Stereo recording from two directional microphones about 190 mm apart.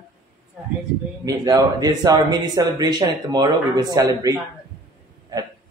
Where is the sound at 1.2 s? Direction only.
20° right (ahead or behind).